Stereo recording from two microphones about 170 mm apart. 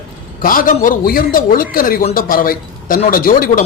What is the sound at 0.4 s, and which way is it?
A man's voice, 55° left (ahead or behind).